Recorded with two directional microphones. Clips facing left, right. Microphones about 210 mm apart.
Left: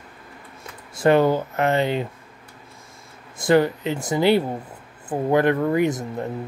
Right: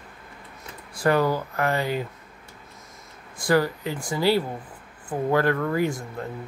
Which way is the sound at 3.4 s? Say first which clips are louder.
Left 4 dB; 20° left (ahead or behind).